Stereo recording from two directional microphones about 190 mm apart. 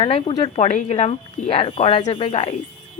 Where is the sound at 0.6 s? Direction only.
35° left (ahead or behind).